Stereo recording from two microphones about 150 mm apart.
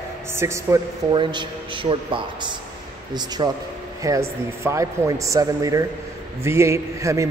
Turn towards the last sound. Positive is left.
turn(degrees=-20)  # may be behind; listen again after turning